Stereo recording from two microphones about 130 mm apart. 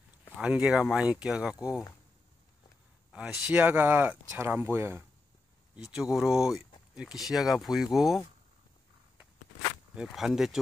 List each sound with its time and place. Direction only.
0.4 s speech: 5° right (ahead or behind)
3.1 s speech: 5° right (ahead or behind)
5.8 s speech: 5° right (ahead or behind)
9.9 s speech: 5° right (ahead or behind)